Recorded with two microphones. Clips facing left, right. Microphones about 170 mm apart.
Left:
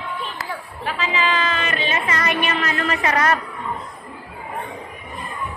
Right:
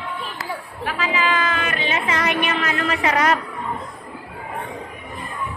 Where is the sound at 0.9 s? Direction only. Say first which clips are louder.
Even; 10° right (ahead or behind).